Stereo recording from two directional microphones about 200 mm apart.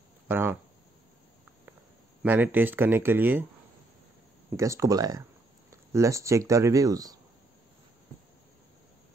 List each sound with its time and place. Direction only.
0.3 s a sound: 10° right (ahead or behind)
2.2 s speech: 10° right (ahead or behind)
4.6 s speech: 15° right (ahead or behind)